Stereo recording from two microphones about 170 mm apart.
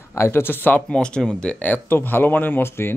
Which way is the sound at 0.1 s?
15° left (ahead or behind).